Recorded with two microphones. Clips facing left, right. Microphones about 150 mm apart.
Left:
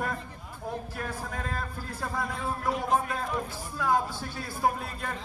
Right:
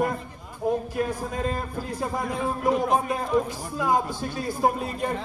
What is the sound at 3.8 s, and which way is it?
A man's voice, 15° right (ahead or behind).